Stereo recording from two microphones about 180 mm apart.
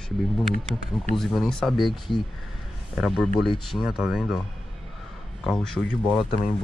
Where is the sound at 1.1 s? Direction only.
Centre (ahead or behind).